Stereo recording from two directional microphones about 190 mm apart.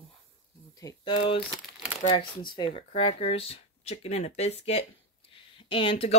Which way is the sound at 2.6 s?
30° left (ahead or behind).